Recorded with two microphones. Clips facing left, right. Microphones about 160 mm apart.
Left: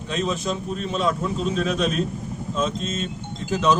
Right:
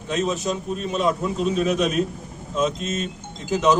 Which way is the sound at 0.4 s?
10° right (ahead or behind).